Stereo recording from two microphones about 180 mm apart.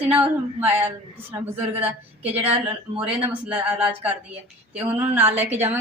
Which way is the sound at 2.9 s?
10° right (ahead or behind).